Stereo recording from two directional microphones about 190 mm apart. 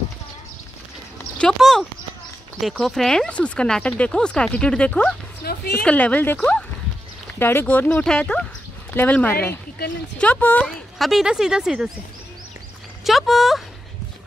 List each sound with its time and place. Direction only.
1.4 s speech: centre (ahead or behind)
5.4 s a woman's voice: 55° left (ahead or behind)
5.8 s speech: 5° left (ahead or behind)
13.0 s speech: centre (ahead or behind)